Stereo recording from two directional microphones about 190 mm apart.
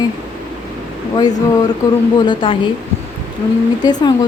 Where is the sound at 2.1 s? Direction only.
25° left (ahead or behind).